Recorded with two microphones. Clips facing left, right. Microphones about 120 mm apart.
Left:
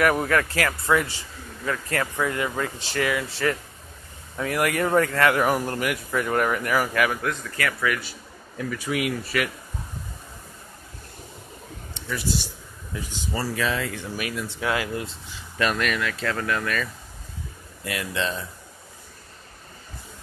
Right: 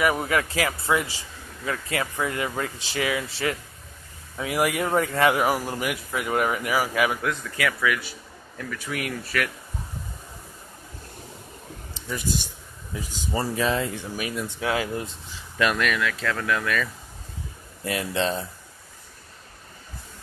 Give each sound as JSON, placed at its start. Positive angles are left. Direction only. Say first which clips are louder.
{"t": 0.0, "sound": "speech", "louder": "left 2 dB", "side_deg": -5}
{"t": 0.4, "sound": "speech", "louder": "left 1 dB", "side_deg": -15}
{"t": 4.4, "sound": "speech", "louder": "left 1 dB", "side_deg": -15}
{"t": 8.5, "sound": "speech", "louder": "left 5 dB", "side_deg": 10}
{"t": 12.1, "sound": "speech", "louder": "left 1 dB", "side_deg": -20}
{"t": 15.6, "sound": "speech", "louder": "right 1 dB", "side_deg": 0}
{"t": 17.8, "sound": "speech", "louder": "right 3 dB", "side_deg": -30}